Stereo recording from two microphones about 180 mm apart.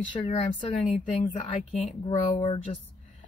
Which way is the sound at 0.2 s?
30° left (ahead or behind).